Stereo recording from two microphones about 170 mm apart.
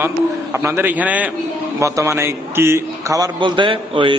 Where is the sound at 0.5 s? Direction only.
15° right (ahead or behind).